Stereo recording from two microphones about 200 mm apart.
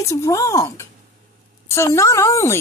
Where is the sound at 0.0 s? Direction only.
15° left (ahead or behind).